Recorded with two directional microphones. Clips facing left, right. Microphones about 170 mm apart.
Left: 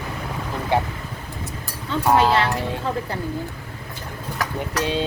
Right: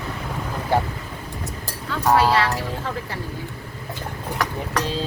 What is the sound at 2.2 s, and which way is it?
Speech, 25° left (ahead or behind).